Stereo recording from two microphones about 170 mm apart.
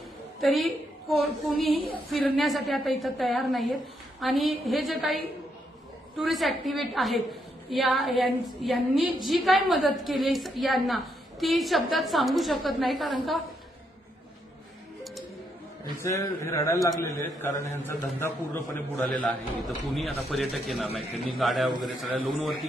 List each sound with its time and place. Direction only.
0.4 s a woman's voice: centre (ahead or behind)
16.0 s a man's voice: 15° left (ahead or behind)
18.9 s a woman's voice: 5° left (ahead or behind)